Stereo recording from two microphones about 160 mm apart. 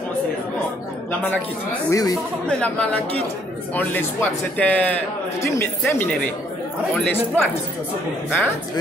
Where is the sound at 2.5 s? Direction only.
5° left (ahead or behind).